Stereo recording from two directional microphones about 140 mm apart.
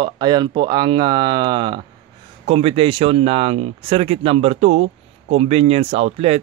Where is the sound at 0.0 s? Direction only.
30° right (ahead or behind).